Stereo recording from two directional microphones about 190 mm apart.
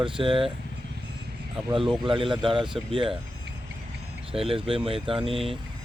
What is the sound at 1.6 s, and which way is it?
Speech, 25° right (ahead or behind).